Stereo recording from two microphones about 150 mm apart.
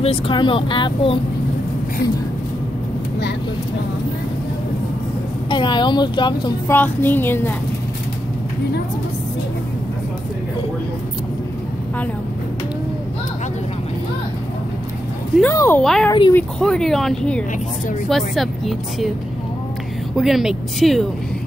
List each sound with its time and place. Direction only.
0.0 s speech: 35° left (ahead or behind)
5.5 s speech: 30° left (ahead or behind)
6.7 s speech: 15° left (ahead or behind)
15.4 s speech: 15° left (ahead or behind)
15.8 s speech: 5° left (ahead or behind)
16.1 s speech: 25° left (ahead or behind)
16.3 s speech: 5° left (ahead or behind)
20.2 s speech: centre (ahead or behind)